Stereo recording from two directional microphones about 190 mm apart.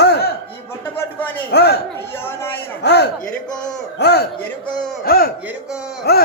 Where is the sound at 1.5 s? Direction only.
60° left (ahead or behind).